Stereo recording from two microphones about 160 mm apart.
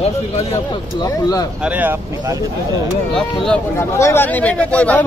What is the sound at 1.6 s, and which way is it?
Speech, 10° right (ahead or behind).